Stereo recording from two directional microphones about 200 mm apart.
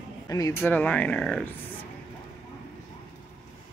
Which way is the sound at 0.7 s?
5° left (ahead or behind).